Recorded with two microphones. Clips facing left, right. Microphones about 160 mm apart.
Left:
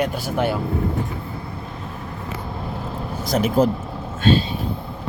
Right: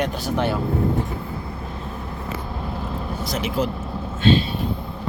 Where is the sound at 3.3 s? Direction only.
45° left (ahead or behind).